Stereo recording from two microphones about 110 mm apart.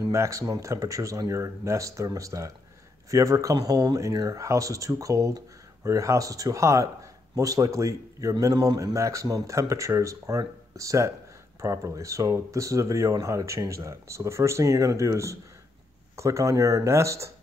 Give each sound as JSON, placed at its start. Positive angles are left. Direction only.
{"t": 0.1, "sound": "speech", "side_deg": -30}